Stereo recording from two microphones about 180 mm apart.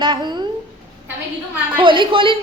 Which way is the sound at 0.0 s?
25° right (ahead or behind).